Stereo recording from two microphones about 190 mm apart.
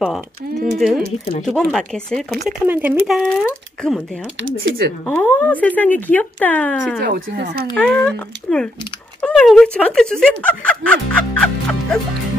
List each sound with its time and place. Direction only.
0.7 s speech: centre (ahead or behind)
4.4 s speech: 90° right
5.0 s speech: 10° left (ahead or behind)
7.0 s speech: 55° right (ahead or behind)
7.7 s speech: 5° left (ahead or behind)